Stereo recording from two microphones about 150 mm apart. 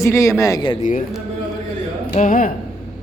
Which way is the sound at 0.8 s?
60° left (ahead or behind).